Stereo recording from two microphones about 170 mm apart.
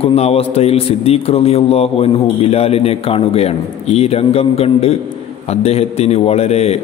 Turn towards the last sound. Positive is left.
turn(degrees=40)  # may be behind; listen again after turning